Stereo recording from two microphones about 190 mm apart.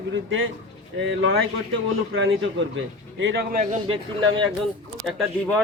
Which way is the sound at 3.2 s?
70° right (ahead or behind).